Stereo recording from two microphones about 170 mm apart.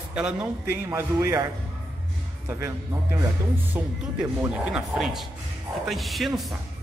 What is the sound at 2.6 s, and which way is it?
A man's voice, 15° right (ahead or behind).